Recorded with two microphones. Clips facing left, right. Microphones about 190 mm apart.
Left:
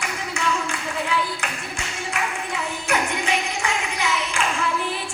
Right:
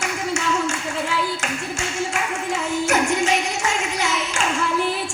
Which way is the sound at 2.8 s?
45° right (ahead or behind).